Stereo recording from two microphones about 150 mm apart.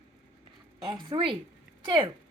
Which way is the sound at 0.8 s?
30° right (ahead or behind).